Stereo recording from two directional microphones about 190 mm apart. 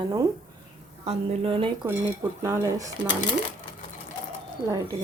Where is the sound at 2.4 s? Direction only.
15° right (ahead or behind).